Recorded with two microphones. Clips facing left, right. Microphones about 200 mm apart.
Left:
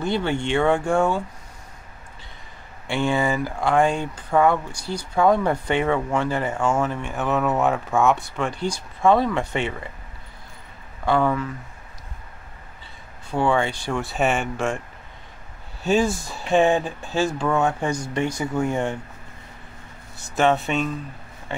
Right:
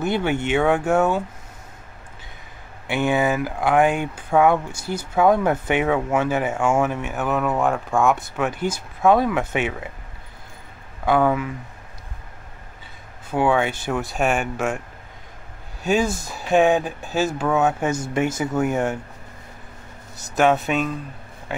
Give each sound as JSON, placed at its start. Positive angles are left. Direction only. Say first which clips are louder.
{"t": 0.0, "sound": "speech", "louder": "right 2 dB", "side_deg": -10}
{"t": 2.9, "sound": "speech", "louder": "right 2 dB", "side_deg": -5}
{"t": 4.7, "sound": "speech", "louder": "right 2 dB", "side_deg": -25}
{"t": 5.1, "sound": "speech", "louder": "right 1 dB", "side_deg": -5}
{"t": 11.1, "sound": "speech", "louder": "right 2 dB", "side_deg": -10}
{"t": 13.3, "sound": "speech", "louder": "right 2 dB", "side_deg": -5}
{"t": 15.9, "sound": "speech", "louder": "even", "side_deg": 0}
{"t": 20.3, "sound": "speech", "louder": "right 2 dB", "side_deg": 0}